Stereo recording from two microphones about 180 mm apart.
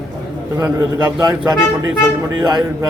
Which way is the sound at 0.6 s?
15° right (ahead or behind).